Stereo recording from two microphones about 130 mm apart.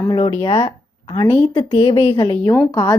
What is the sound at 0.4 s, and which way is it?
Speech, 35° left (ahead or behind).